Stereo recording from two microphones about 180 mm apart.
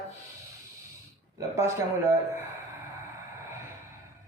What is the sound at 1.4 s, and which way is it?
Speech, 15° right (ahead or behind).